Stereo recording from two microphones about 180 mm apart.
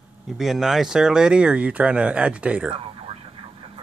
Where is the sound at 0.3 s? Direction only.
Centre (ahead or behind).